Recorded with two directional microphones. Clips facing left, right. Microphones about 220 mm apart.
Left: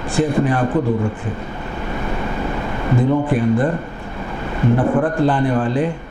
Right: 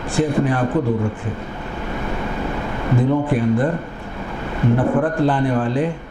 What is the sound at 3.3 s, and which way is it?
Speech, 15° left (ahead or behind).